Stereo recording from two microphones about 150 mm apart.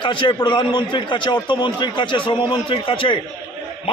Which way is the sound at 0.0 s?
35° left (ahead or behind).